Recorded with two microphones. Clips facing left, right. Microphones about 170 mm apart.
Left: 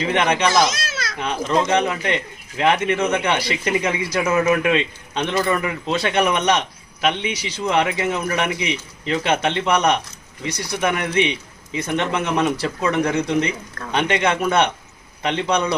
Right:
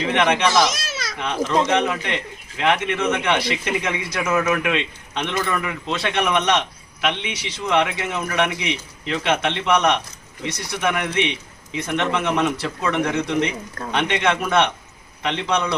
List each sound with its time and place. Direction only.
0.0 s speech: 40° left (ahead or behind)